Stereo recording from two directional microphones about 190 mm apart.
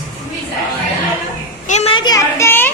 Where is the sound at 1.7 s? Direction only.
35° left (ahead or behind); by 2.7 s 10° left (ahead or behind).